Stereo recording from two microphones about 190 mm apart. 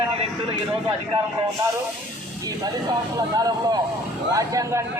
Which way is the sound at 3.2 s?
20° right (ahead or behind).